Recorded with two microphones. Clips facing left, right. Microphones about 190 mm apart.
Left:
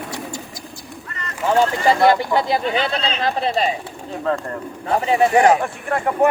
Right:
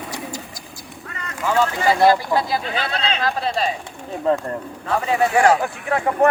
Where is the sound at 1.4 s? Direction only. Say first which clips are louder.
Left 2 dB; 25° left (ahead or behind).